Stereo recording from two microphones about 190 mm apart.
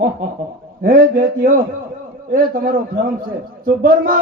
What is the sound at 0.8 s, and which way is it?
A man's voice, 50° right (ahead or behind).